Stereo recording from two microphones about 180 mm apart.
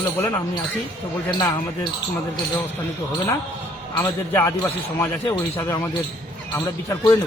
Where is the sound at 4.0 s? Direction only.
15° left (ahead or behind).